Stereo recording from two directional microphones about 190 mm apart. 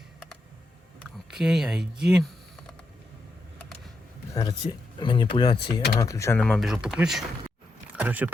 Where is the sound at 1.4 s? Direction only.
Centre (ahead or behind).